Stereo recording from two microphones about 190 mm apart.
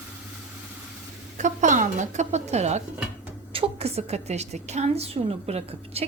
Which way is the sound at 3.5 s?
30° right (ahead or behind).